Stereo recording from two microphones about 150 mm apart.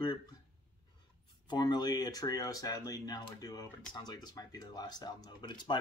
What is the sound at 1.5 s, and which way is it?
Speech, 30° left (ahead or behind).